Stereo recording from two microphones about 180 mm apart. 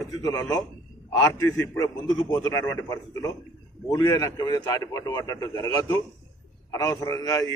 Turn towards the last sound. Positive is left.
turn(degrees=20)  # may be behind; listen again after turning